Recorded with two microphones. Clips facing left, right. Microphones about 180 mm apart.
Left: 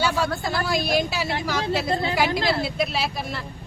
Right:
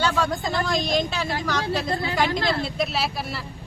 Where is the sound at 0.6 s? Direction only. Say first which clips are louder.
Left 1 dB; 10° left (ahead or behind).